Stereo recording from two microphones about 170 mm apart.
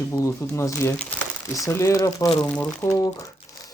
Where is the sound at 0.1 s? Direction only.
20° left (ahead or behind).